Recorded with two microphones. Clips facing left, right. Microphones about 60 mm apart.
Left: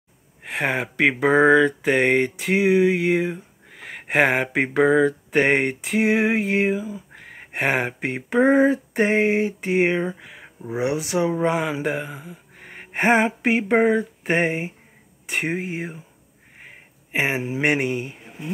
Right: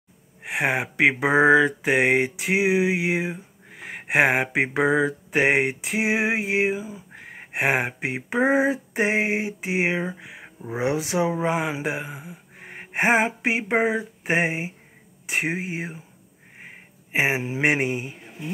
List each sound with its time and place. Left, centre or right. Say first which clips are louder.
0.4 s speech: even; centre
10.7 s speech: left 1 dB; right
11.2 s speech: left 2 dB; centre